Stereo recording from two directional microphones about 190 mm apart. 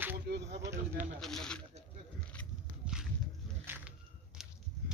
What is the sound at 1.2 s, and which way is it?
Speech, 5° left (ahead or behind).